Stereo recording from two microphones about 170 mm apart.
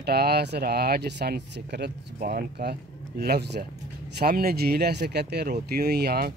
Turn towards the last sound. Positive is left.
turn(degrees=-65)  # may be behind; listen again after turning